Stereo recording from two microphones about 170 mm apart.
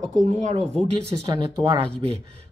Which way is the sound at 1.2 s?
25° right (ahead or behind).